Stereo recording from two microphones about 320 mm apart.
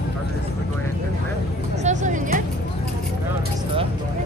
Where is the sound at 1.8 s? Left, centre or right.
Right.